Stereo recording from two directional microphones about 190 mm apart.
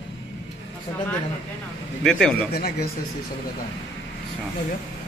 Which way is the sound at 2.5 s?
55° left (ahead or behind).